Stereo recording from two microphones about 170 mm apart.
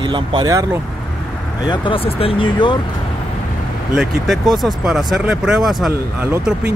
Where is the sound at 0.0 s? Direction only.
30° right (ahead or behind).